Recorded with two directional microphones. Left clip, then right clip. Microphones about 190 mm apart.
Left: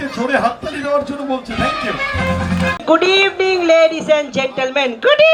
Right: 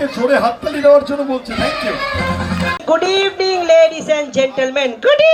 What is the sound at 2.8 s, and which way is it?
A man's voice, 50° left (ahead or behind).